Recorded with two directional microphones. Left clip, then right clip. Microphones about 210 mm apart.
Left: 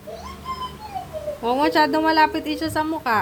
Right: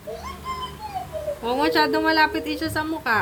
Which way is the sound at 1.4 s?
30° left (ahead or behind).